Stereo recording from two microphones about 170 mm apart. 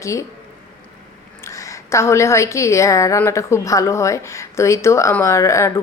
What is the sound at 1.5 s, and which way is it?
A woman's voice, 15° left (ahead or behind).